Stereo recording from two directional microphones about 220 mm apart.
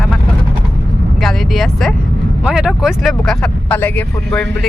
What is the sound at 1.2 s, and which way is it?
Speech, centre (ahead or behind).